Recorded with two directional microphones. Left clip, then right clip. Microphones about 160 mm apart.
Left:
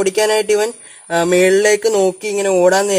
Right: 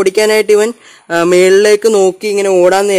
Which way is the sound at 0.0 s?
90° right.